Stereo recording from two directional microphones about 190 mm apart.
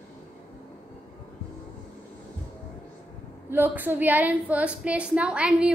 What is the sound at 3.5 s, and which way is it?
A woman's voice, 10° right (ahead or behind).